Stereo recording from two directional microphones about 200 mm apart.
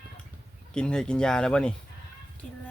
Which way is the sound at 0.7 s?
5° left (ahead or behind).